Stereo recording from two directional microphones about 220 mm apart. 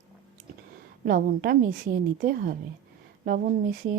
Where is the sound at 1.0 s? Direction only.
40° right (ahead or behind).